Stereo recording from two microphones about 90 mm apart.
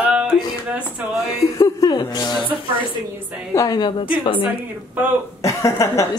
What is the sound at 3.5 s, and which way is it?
Speech, 40° left (ahead or behind).